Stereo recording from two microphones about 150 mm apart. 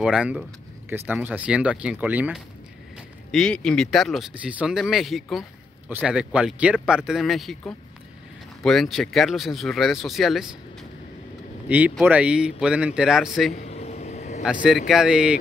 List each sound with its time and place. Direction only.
0.0 s speech: 5° right (ahead or behind)
3.3 s speech: 5° left (ahead or behind)
12.0 s speech: 10° right (ahead or behind)
13.5 s a sound: 45° left (ahead or behind)
14.4 s speech: 5° right (ahead or behind)